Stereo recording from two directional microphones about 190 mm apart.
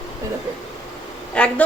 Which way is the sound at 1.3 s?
5° left (ahead or behind).